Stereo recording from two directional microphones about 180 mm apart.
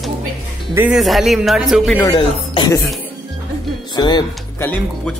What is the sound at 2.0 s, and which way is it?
Speech, 20° left (ahead or behind).